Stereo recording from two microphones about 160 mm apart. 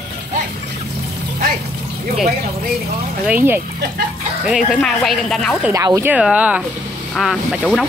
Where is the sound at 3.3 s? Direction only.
10° right (ahead or behind).